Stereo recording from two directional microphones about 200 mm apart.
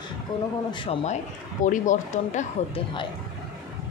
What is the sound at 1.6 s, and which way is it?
Speech, 40° left (ahead or behind).